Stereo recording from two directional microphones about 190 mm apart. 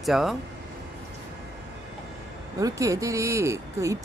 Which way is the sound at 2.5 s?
15° right (ahead or behind).